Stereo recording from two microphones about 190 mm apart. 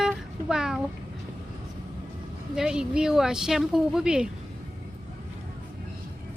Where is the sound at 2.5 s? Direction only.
5° right (ahead or behind).